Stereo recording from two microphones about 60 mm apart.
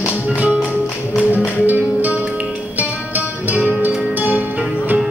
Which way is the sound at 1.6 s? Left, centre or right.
Right.